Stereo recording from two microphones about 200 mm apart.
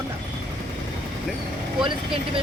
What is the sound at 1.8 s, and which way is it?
Speech, 25° right (ahead or behind).